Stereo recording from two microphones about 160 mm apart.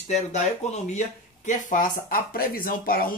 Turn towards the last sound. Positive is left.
turn(degrees=65)  # may be behind; listen again after turning